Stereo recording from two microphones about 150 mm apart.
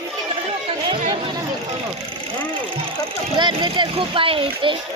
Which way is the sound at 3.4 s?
30° right (ahead or behind).